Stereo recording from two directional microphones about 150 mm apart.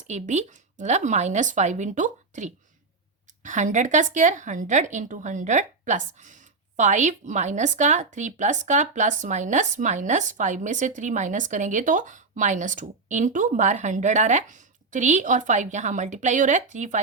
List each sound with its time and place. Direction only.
0.1 s speech: 50° right (ahead or behind)